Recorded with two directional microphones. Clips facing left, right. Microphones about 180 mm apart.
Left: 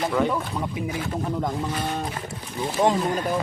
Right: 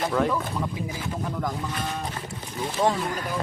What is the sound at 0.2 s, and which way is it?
Speech, centre (ahead or behind).